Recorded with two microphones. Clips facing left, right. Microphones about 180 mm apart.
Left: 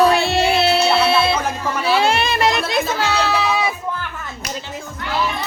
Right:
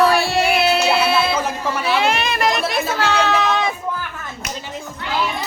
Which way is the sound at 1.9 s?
30° left (ahead or behind).